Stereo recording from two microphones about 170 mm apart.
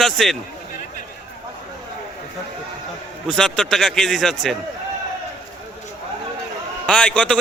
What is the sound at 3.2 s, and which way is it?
A man's voice, centre (ahead or behind).